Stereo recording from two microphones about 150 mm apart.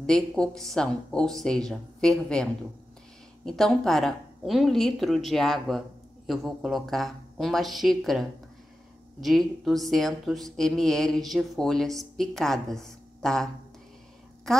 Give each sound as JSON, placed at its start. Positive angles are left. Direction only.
{"t": 0.0, "sound": "speech", "side_deg": 5}